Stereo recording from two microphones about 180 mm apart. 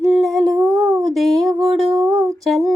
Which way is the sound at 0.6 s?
20° right (ahead or behind).